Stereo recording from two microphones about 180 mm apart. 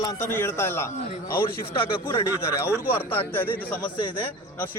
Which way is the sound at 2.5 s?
15° left (ahead or behind).